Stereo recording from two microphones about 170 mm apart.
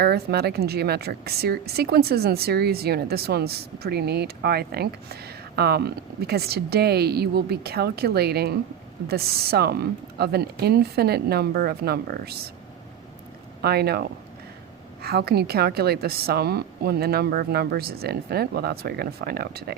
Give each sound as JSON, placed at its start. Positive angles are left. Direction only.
{"t": 0.0, "sound": "a woman's voice", "side_deg": -70}
{"t": 13.6, "sound": "a woman's voice", "side_deg": -65}
{"t": 15.0, "sound": "a woman's voice", "side_deg": -65}